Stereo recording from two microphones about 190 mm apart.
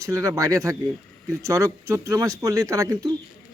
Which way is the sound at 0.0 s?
15° right (ahead or behind).